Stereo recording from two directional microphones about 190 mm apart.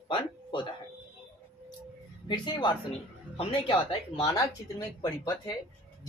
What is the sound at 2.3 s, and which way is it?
Speech, 25° left (ahead or behind).